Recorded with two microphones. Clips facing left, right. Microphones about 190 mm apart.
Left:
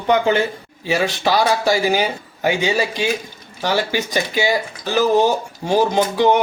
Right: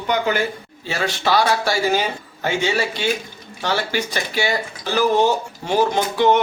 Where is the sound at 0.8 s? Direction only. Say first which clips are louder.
Left 4 dB; 15° left (ahead or behind).